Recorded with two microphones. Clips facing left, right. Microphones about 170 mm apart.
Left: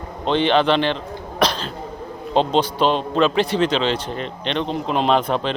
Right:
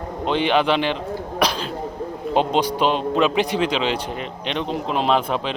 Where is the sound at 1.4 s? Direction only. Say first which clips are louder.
Left 2 dB; 10° right (ahead or behind).